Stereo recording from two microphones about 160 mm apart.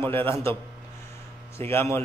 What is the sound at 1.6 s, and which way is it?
Speech, 15° left (ahead or behind).